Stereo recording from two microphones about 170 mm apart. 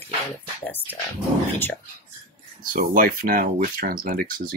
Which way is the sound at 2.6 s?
55° right (ahead or behind).